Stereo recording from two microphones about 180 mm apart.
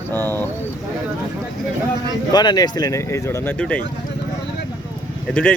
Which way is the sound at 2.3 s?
25° left (ahead or behind).